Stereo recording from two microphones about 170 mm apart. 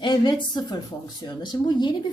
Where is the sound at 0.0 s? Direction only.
25° left (ahead or behind).